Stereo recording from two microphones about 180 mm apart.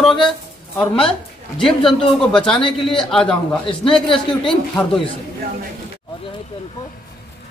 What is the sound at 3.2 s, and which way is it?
Speech, 30° left (ahead or behind).